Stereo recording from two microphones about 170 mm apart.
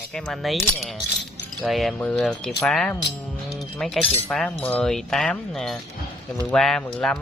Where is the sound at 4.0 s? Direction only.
35° left (ahead or behind).